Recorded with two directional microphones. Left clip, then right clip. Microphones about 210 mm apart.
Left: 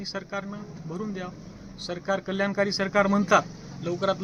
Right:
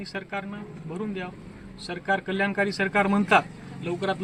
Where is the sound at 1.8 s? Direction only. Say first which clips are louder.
Right 2 dB; 10° left (ahead or behind).